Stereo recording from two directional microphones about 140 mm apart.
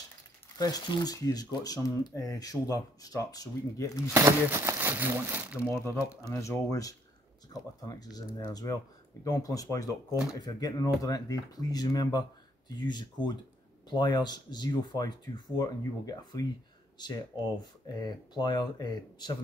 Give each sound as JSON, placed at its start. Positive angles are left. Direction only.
{"t": 0.6, "sound": "speech", "side_deg": 30}
{"t": 4.1, "sound": "speech", "side_deg": -20}
{"t": 5.7, "sound": "speech", "side_deg": 20}